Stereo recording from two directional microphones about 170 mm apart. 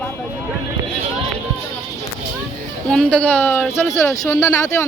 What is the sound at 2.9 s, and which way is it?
Speech, 5° left (ahead or behind).